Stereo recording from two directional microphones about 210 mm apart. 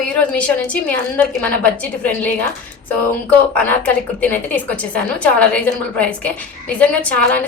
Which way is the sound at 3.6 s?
5° left (ahead or behind).